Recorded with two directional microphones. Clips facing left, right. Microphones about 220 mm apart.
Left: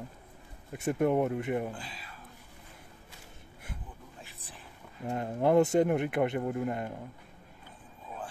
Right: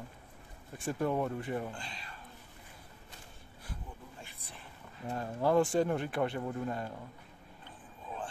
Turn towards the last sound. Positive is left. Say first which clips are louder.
# left 4 dB
turn(degrees=20)  # may be behind; listen again after turning